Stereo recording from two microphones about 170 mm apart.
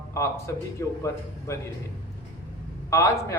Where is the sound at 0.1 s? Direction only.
15° left (ahead or behind).